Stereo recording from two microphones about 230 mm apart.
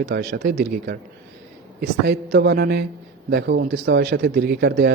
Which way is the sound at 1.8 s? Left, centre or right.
Right.